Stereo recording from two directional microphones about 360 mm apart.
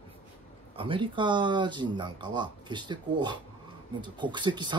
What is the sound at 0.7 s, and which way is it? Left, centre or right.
Speech, centre.